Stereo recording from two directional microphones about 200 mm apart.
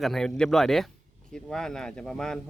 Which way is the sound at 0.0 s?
Centre (ahead or behind).